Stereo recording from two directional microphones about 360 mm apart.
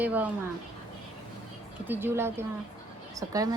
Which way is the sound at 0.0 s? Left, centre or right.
Centre.